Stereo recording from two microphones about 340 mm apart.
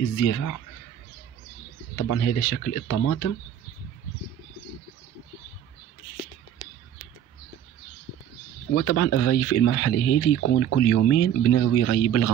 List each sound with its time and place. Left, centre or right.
0.2 s speech: left
2.0 s speech: left
8.7 s speech: left